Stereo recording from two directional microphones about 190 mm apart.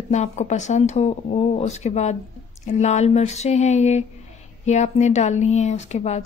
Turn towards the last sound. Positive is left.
turn(degrees=35)  # may be behind; listen again after turning